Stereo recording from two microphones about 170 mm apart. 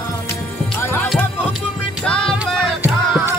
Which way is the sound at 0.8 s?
15° left (ahead or behind).